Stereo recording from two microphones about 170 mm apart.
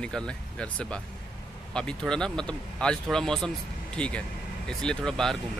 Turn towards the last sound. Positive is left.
turn(degrees=5)  # may be behind; listen again after turning